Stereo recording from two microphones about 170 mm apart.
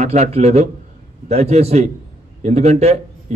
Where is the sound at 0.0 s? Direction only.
40° right (ahead or behind).